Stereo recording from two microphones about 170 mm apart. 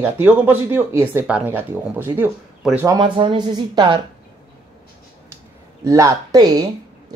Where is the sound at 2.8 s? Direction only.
25° right (ahead or behind).